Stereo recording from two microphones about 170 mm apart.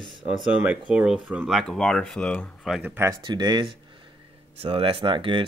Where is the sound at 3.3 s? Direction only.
25° right (ahead or behind).